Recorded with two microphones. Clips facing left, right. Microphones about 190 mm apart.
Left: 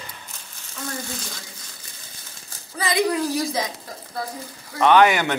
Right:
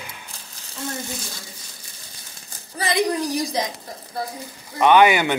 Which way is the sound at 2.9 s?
15° right (ahead or behind).